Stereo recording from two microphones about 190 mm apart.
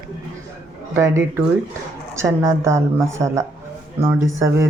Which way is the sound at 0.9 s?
15° right (ahead or behind).